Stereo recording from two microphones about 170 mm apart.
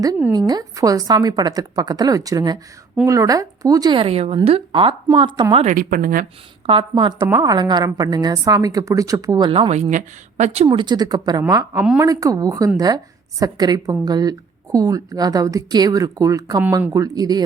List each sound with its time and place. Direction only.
0.3 s a woman's voice: 25° right (ahead or behind)
5.6 s speech: 55° right (ahead or behind)
6.7 s a woman's voice: 30° right (ahead or behind)
9.5 s a woman's voice: 35° right (ahead or behind)